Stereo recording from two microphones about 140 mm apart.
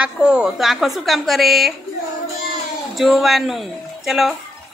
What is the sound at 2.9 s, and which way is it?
Speech, centre (ahead or behind).